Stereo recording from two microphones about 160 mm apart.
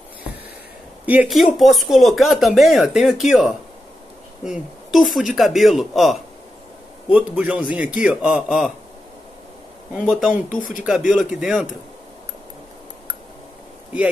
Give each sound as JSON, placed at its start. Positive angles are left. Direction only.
{"t": 1.0, "sound": "a man's voice", "side_deg": -5}
{"t": 9.9, "sound": "speech", "side_deg": -5}
{"t": 10.5, "sound": "speech", "side_deg": 55}
{"t": 10.8, "sound": "speech", "side_deg": -5}